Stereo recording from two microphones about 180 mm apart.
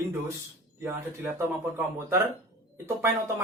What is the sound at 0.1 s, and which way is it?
Speech, 15° right (ahead or behind).